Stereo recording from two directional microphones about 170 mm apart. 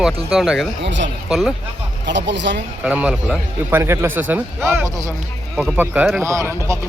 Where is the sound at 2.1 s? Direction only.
90° right.